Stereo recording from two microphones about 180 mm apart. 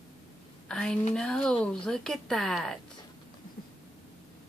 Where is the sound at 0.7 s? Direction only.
5° left (ahead or behind).